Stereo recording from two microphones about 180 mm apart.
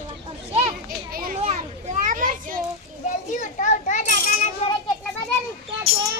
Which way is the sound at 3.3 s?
45° left (ahead or behind).